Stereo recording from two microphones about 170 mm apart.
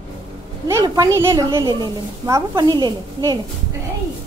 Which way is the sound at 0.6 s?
20° right (ahead or behind).